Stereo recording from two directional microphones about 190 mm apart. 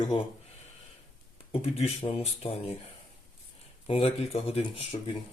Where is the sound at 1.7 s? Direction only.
30° left (ahead or behind).